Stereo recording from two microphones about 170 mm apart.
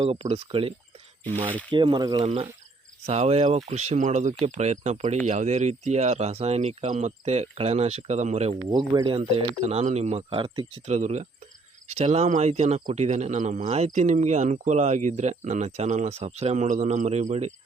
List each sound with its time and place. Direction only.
0.0 s speech: 35° right (ahead or behind)
1.7 s speech: 25° right (ahead or behind)
8.7 s speech: 30° right (ahead or behind)
10.8 s speech: 45° right (ahead or behind)